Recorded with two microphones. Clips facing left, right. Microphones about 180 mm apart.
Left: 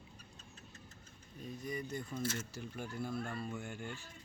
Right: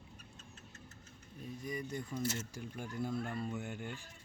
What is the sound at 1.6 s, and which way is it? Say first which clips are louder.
Speech: even; 10° right (ahead or behind).